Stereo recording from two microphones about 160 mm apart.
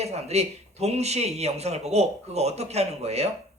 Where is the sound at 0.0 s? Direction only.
40° right (ahead or behind).